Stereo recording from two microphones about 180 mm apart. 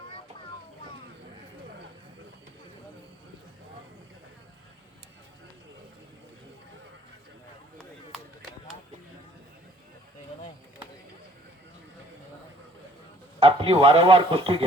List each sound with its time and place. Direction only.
13.4 s speech: 30° right (ahead or behind)